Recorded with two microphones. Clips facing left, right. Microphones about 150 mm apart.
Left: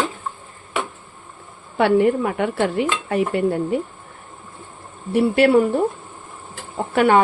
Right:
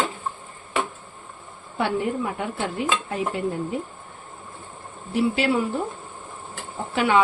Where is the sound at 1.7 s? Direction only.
70° left (ahead or behind).